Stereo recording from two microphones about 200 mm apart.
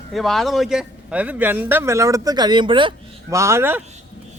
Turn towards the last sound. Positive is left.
turn(degrees=-10)  # may be behind; listen again after turning